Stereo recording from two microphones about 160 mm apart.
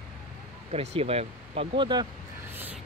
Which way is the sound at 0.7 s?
40° right (ahead or behind).